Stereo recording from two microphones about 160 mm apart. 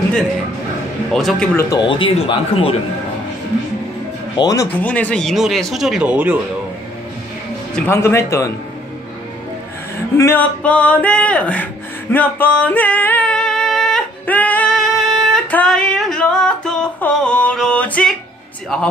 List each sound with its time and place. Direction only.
1.1 s speech: 5° left (ahead or behind)
1.6 s speech: 25° left (ahead or behind)
4.4 s speech: 20° left (ahead or behind)
4.7 s speech: 10° left (ahead or behind); by 6.3 s 10° right (ahead or behind)
7.7 s speech: 15° left (ahead or behind)
10.1 s speech: 15° left (ahead or behind)